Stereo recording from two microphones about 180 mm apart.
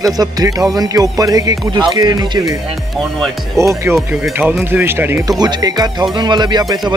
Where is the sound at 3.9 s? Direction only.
Centre (ahead or behind).